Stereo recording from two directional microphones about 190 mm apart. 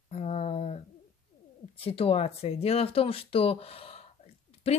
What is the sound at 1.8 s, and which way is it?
Speech, 30° left (ahead or behind).